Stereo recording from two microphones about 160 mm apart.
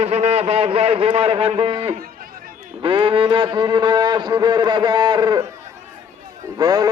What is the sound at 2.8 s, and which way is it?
A man's voice, 35° right (ahead or behind).